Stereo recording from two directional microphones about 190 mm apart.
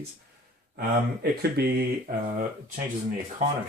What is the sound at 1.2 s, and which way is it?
Speech, 55° right (ahead or behind).